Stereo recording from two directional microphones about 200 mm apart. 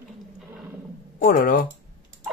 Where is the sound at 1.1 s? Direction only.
45° left (ahead or behind).